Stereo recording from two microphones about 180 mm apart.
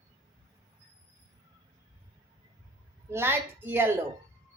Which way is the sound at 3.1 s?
15° right (ahead or behind).